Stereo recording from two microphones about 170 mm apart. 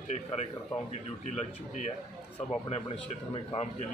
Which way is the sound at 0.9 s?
40° left (ahead or behind).